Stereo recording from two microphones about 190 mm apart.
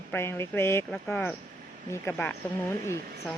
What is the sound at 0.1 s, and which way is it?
Speech, 15° left (ahead or behind).